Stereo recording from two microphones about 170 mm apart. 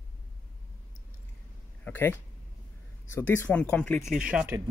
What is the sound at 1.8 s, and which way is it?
Speech, 10° left (ahead or behind).